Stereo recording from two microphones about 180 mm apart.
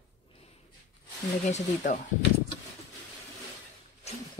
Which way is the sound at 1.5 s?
40° left (ahead or behind).